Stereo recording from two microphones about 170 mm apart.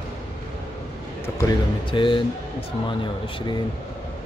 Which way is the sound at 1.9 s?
30° left (ahead or behind).